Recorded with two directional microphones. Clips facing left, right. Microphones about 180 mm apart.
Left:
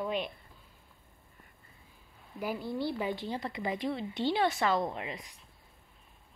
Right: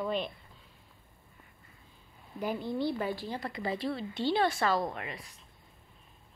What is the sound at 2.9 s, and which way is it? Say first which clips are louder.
A woman's voice: even; 15° left (ahead or behind).